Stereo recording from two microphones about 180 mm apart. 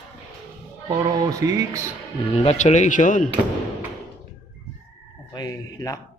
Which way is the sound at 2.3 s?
40° left (ahead or behind).